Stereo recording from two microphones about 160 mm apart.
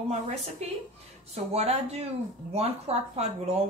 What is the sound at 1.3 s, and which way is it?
A woman's voice, 45° right (ahead or behind).